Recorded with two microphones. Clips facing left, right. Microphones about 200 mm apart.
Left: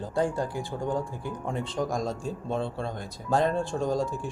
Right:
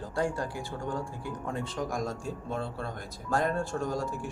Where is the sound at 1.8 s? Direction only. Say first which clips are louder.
Left 6 dB; 25° left (ahead or behind).